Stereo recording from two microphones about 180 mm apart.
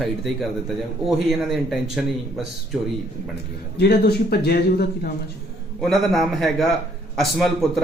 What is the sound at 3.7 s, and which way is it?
A man's voice, 60° left (ahead or behind).